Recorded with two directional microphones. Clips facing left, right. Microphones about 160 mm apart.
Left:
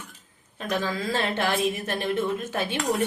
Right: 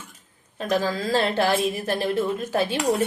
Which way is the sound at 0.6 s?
35° right (ahead or behind).